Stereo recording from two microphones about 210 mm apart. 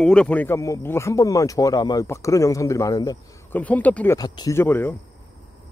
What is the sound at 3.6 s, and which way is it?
Speech, 5° left (ahead or behind).